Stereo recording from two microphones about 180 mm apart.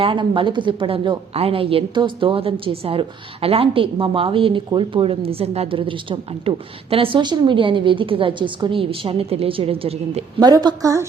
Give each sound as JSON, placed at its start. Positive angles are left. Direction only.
{"t": 0.0, "sound": "a woman's voice", "side_deg": -30}
{"t": 10.4, "sound": "a woman's voice", "side_deg": -20}